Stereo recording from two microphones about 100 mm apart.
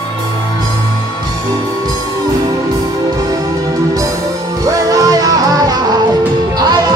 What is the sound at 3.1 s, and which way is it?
Music, 35° right (ahead or behind).